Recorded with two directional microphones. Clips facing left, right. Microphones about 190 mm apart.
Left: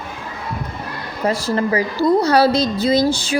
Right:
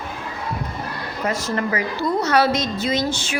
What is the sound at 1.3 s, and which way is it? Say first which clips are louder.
A woman's voice: left 5 dB; 30° left (ahead or behind).